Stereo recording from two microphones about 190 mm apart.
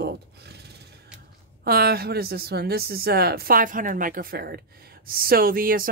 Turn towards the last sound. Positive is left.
turn(degrees=-50)  # may be behind; listen again after turning